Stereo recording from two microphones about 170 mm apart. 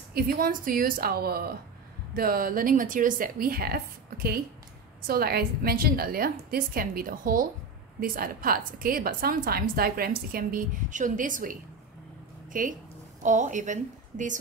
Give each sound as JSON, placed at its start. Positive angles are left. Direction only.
{"t": 0.1, "sound": "a woman's voice", "side_deg": -55}
{"t": 12.5, "sound": "a woman's voice", "side_deg": -50}